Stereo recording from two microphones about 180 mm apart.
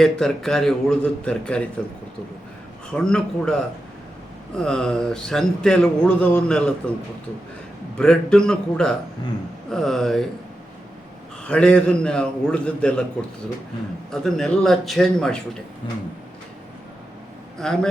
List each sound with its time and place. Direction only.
0.0 s speech: centre (ahead or behind)
2.9 s speech: 5° left (ahead or behind)
7.9 s speech: 5° left (ahead or behind)
11.4 s speech: 5° left (ahead or behind)
14.1 s speech: centre (ahead or behind)
15.8 s speech: 25° left (ahead or behind)
17.6 s speech: centre (ahead or behind)